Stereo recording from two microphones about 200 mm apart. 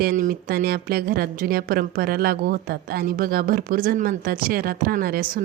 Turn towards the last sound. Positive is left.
turn(degrees=-45)  # may be behind; listen again after turning